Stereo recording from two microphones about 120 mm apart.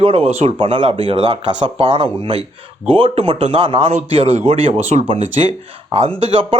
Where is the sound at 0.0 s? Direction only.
55° right (ahead or behind).